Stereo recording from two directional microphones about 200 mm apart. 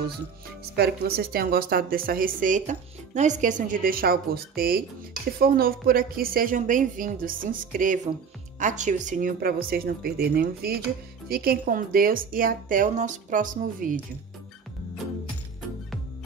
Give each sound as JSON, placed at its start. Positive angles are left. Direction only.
{"t": 0.7, "sound": "speech", "side_deg": -50}